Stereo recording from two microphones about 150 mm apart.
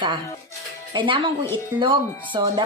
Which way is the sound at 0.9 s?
35° right (ahead or behind).